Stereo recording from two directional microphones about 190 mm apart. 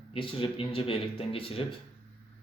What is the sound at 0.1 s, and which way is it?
Speech, 30° left (ahead or behind).